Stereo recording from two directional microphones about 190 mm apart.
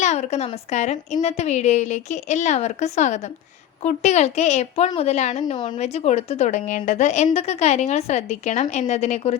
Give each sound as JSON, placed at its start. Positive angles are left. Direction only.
{"t": 0.0, "sound": "a woman's voice", "side_deg": 35}